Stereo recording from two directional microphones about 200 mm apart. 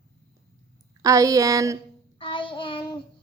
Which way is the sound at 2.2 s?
25° left (ahead or behind).